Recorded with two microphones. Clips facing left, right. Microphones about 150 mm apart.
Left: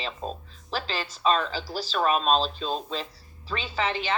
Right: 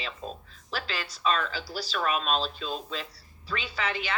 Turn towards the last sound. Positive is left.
turn(degrees=35)  # may be behind; listen again after turning